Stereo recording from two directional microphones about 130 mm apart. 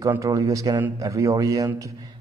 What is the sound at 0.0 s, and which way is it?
A man's voice, 25° right (ahead or behind).